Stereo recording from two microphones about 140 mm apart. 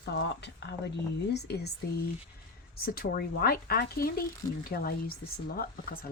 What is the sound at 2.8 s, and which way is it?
Speech, 90° left.